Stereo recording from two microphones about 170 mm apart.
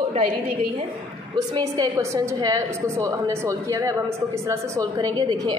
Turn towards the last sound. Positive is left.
turn(degrees=-20)  # may be behind; listen again after turning